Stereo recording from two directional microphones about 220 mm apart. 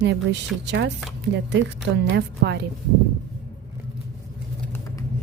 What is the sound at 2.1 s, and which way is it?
Speech, 50° right (ahead or behind).